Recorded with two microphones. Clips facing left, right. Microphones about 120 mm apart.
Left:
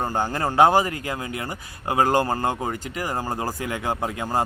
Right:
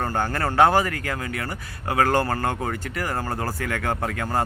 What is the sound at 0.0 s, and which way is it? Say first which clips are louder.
Speech: even; 15° left (ahead or behind).